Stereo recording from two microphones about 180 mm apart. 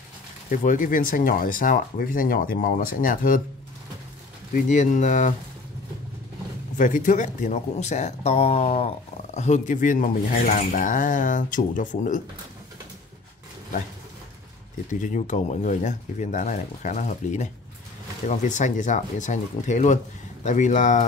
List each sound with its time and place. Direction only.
0.5 s speech: 50° left (ahead or behind)
4.6 s speech: 45° left (ahead or behind)
6.8 s speech: 45° left (ahead or behind)
14.9 s speech: 45° left (ahead or behind)